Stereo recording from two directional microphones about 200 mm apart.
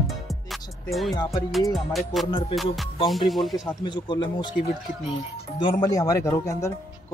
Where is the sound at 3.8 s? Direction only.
20° left (ahead or behind).